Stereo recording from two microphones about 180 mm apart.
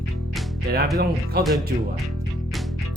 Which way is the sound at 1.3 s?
60° right (ahead or behind).